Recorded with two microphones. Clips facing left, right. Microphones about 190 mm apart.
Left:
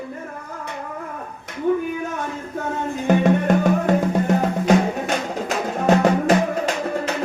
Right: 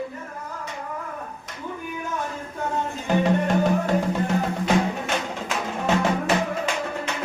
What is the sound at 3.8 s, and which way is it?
Music, 45° left (ahead or behind).